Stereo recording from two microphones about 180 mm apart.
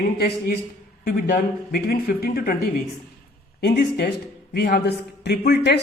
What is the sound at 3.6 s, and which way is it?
Speech, 60° left (ahead or behind).